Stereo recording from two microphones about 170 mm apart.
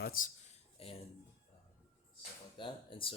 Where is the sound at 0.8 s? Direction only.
35° left (ahead or behind).